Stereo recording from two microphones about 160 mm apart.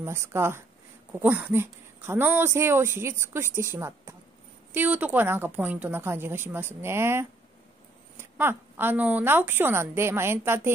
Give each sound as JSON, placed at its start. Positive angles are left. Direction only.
{"t": 0.0, "sound": "speech", "side_deg": -15}